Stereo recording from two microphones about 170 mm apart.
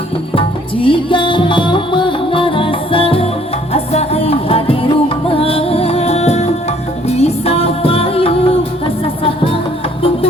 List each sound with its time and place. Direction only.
0.9 s music: 30° left (ahead or behind)